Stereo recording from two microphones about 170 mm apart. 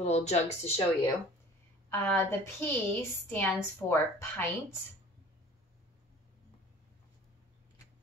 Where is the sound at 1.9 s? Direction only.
15° left (ahead or behind).